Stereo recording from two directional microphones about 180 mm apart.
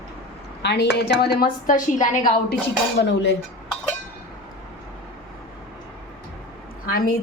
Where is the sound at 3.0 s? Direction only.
70° left (ahead or behind).